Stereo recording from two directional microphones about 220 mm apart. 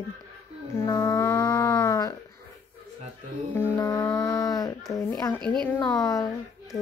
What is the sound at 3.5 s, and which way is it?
Music, 15° left (ahead or behind).